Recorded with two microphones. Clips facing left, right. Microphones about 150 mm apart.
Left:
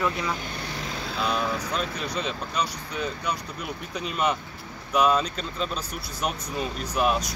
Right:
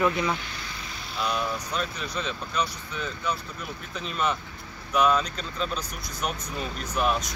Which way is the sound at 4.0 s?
10° left (ahead or behind).